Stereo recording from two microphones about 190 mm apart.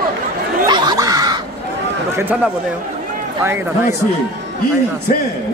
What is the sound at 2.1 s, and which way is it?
Speech, 10° right (ahead or behind).